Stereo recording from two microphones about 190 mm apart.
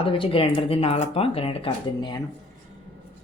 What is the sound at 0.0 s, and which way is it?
Speech, 30° left (ahead or behind).